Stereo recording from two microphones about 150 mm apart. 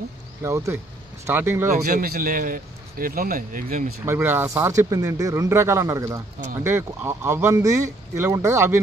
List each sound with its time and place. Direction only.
0.4 s speech: 20° right (ahead or behind)
1.7 s speech: 65° right (ahead or behind)
4.0 s speech: 15° right (ahead or behind)